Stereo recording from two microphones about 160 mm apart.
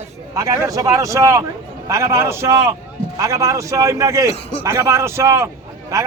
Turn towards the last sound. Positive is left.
turn(degrees=-20)  # may be behind; listen again after turning